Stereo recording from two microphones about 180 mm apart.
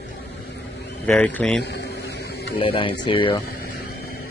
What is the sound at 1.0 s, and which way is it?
Speech, 10° left (ahead or behind).